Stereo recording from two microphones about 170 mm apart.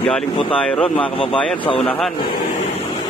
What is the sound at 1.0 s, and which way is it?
Speech, 30° left (ahead or behind).